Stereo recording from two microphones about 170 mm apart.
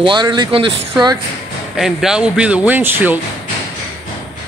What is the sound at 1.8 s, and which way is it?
A man's voice, centre (ahead or behind).